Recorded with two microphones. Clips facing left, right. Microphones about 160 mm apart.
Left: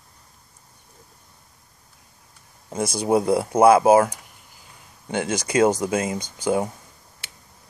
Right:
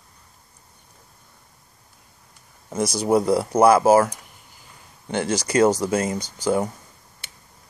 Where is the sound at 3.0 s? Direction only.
20° left (ahead or behind).